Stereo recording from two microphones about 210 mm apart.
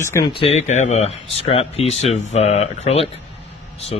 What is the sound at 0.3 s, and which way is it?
Speech, 30° left (ahead or behind).